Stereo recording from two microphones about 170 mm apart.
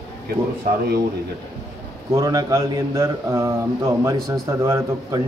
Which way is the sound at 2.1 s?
20° right (ahead or behind).